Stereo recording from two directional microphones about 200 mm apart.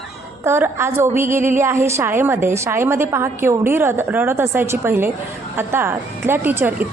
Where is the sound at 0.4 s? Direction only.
10° right (ahead or behind).